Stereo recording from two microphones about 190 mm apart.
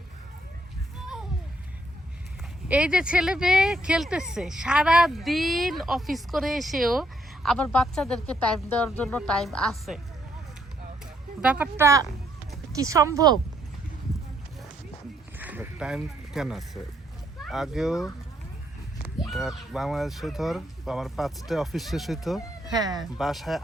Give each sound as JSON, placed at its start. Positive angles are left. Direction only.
{"t": 2.6, "sound": "speech", "side_deg": -5}
{"t": 11.0, "sound": "speech", "side_deg": -5}
{"t": 15.4, "sound": "speech", "side_deg": -10}
{"t": 19.3, "sound": "speech", "side_deg": 0}
{"t": 22.7, "sound": "speech", "side_deg": -20}
{"t": 23.1, "sound": "speech", "side_deg": 0}